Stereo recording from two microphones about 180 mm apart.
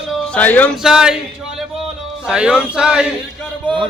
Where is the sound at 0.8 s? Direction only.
5° right (ahead or behind).